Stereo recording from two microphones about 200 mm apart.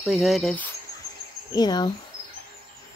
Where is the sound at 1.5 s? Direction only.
20° left (ahead or behind).